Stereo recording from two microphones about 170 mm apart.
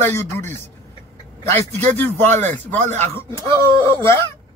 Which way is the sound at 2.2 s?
45° right (ahead or behind).